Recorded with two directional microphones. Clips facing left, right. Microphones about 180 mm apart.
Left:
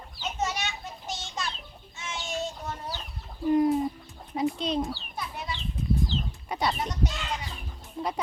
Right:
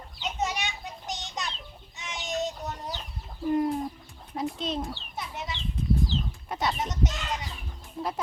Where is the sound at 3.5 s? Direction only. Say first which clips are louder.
Left 4 dB; centre (ahead or behind).